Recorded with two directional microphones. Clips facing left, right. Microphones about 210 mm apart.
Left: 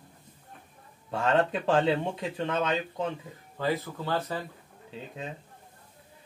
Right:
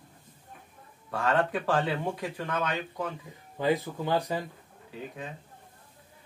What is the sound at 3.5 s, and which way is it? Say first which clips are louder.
Speech: right 3 dB; 15° right (ahead or behind).